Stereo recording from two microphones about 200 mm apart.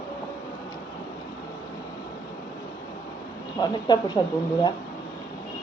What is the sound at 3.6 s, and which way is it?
Speech, 20° left (ahead or behind).